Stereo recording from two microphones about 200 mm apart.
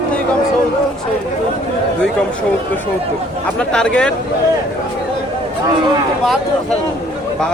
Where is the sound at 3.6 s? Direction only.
5° left (ahead or behind).